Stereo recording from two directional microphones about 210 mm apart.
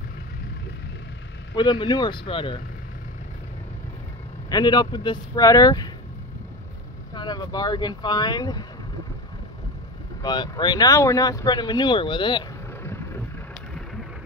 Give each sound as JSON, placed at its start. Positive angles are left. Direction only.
{"t": 1.5, "sound": "speech", "side_deg": 20}
{"t": 4.5, "sound": "speech", "side_deg": 20}
{"t": 7.2, "sound": "speech", "side_deg": 20}
{"t": 10.2, "sound": "speech", "side_deg": 20}